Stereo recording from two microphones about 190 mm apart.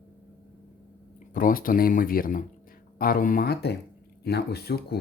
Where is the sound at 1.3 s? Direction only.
45° left (ahead or behind).